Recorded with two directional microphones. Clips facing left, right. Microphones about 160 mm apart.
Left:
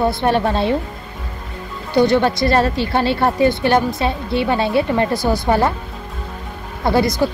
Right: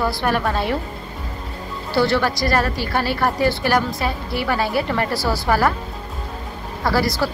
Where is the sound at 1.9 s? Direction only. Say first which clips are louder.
Left 4 dB; 20° left (ahead or behind).